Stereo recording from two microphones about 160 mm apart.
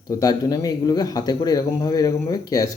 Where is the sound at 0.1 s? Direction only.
25° left (ahead or behind).